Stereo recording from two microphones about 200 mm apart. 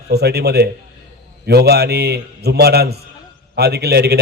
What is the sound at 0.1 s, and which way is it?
A man's voice, 55° right (ahead or behind).